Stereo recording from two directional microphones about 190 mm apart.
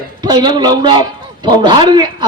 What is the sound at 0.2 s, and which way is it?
Speech, 20° right (ahead or behind).